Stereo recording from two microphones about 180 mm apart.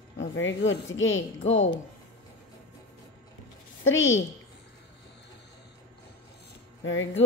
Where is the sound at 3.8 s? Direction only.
90° left.